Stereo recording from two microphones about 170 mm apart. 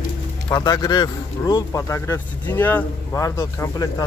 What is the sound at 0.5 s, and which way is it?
Speech, 20° left (ahead or behind).